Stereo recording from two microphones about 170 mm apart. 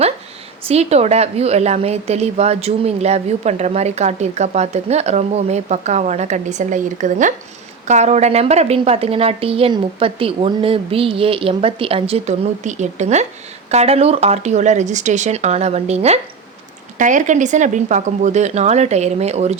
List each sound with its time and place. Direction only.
0.7 s a woman's voice: 40° right (ahead or behind)